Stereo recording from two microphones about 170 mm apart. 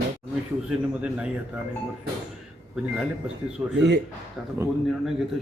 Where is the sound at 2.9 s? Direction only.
5° right (ahead or behind).